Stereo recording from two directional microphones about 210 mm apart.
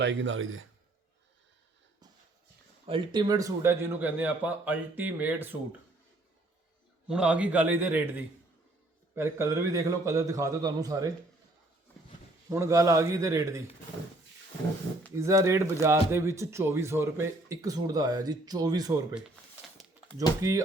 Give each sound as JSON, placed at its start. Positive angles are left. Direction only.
{"t": 0.0, "sound": "a man's voice", "side_deg": -65}
{"t": 2.8, "sound": "speech", "side_deg": -25}
{"t": 7.1, "sound": "speech", "side_deg": -5}
{"t": 12.5, "sound": "speech", "side_deg": -15}
{"t": 15.1, "sound": "speech", "side_deg": -15}